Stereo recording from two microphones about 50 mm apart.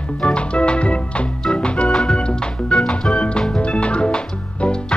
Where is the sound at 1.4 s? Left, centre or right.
Centre.